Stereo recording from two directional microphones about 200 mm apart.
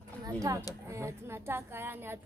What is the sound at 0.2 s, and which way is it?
Speech, 20° right (ahead or behind).